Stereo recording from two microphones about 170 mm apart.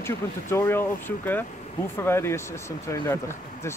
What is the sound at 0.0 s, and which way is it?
Speech, 15° left (ahead or behind).